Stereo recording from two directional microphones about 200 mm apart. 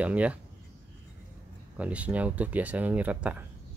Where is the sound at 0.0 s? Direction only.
5° right (ahead or behind).